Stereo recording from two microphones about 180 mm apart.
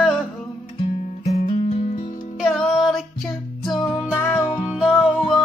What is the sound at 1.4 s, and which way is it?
Music, 40° left (ahead or behind).